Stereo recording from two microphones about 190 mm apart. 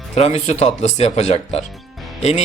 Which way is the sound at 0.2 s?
35° left (ahead or behind).